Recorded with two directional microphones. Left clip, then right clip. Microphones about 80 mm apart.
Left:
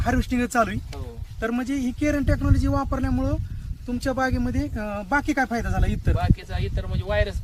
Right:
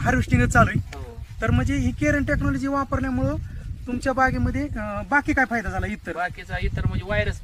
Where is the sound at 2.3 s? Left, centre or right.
Centre.